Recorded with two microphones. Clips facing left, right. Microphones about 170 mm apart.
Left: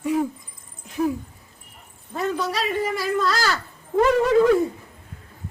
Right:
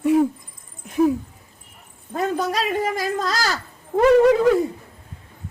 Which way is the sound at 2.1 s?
50° right (ahead or behind).